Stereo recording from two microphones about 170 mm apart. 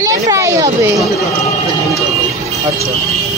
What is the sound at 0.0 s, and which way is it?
Children playing, 20° right (ahead or behind).